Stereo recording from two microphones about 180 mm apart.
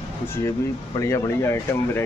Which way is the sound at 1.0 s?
15° left (ahead or behind).